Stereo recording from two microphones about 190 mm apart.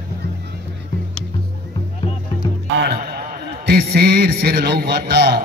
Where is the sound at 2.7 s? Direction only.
55° right (ahead or behind).